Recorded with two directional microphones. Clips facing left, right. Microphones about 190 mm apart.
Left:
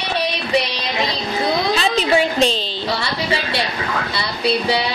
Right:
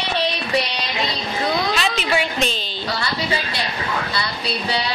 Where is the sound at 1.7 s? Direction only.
30° left (ahead or behind).